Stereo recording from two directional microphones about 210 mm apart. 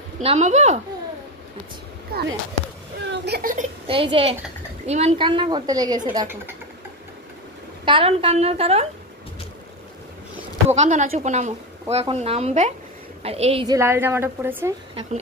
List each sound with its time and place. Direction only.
0.2 s a woman's voice: 30° right (ahead or behind)
2.1 s speech: 45° right (ahead or behind)
3.8 s speech: 25° right (ahead or behind)
7.8 s speech: 25° right (ahead or behind)
10.7 s a woman's voice: 35° right (ahead or behind)
13.7 s a woman's voice: 10° right (ahead or behind)